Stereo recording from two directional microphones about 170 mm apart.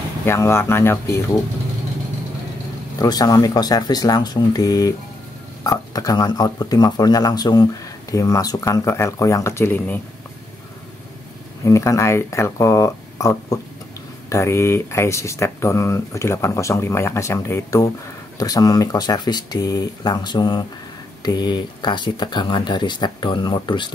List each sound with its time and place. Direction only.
0.3 s speech: 15° left (ahead or behind)
3.0 s speech: 20° left (ahead or behind)
11.6 s speech: 20° left (ahead or behind)